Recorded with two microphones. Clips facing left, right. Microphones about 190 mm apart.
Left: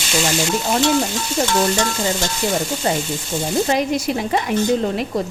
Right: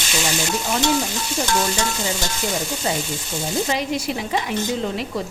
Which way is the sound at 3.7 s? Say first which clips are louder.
Left 4 dB; 45° left (ahead or behind).